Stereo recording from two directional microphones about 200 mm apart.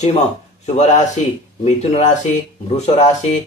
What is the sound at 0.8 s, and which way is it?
Speech, 35° left (ahead or behind).